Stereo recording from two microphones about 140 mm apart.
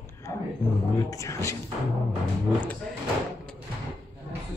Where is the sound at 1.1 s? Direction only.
20° left (ahead or behind).